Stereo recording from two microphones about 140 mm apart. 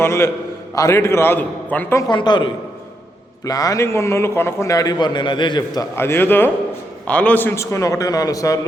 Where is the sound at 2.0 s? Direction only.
30° left (ahead or behind).